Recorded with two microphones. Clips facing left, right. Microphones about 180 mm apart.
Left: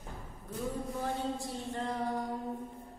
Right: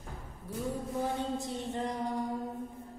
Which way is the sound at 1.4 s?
20° right (ahead or behind).